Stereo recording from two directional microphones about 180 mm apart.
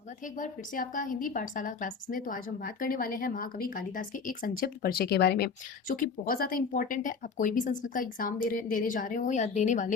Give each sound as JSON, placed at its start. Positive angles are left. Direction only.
{"t": 0.3, "sound": "a woman's voice", "side_deg": 50}
{"t": 5.9, "sound": "a woman's voice", "side_deg": 50}